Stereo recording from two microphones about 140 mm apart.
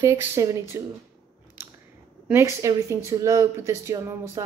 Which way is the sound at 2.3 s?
20° right (ahead or behind).